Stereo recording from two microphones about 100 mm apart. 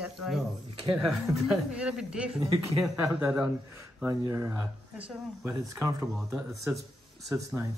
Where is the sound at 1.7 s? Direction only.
10° right (ahead or behind).